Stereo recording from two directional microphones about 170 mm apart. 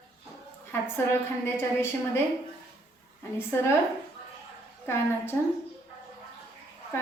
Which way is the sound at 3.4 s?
15° left (ahead or behind).